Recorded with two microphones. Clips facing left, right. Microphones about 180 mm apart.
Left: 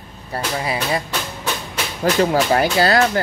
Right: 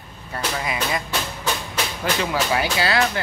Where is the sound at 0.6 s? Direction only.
35° left (ahead or behind).